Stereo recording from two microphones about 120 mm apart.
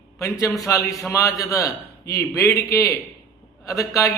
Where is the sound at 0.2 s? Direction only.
25° left (ahead or behind).